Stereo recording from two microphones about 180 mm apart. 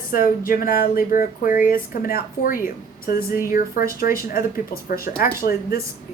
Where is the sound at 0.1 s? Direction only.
50° left (ahead or behind).